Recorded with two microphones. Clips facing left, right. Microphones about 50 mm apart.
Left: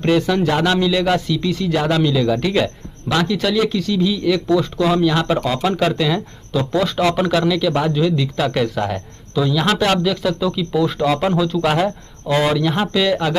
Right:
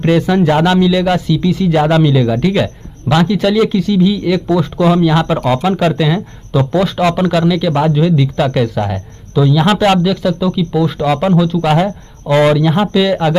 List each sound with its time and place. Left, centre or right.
0.0 s speech: centre
0.7 s speech: centre
8.5 s speech: centre
10.0 s speech: centre